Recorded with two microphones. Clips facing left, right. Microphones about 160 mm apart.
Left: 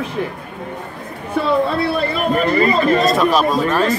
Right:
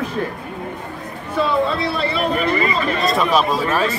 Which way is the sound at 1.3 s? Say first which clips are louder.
Left 2 dB; 55° left (ahead or behind).